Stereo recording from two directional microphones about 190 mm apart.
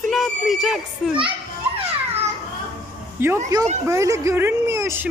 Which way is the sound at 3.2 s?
15° right (ahead or behind).